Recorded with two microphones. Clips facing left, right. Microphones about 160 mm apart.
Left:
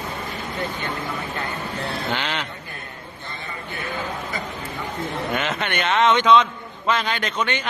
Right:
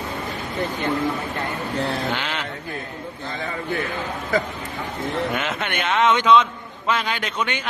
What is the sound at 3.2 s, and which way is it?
Speech, 90° right.